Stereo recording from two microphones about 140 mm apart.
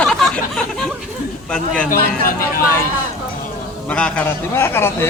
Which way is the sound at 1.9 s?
80° left.